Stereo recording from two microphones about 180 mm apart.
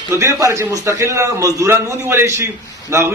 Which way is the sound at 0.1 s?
15° right (ahead or behind).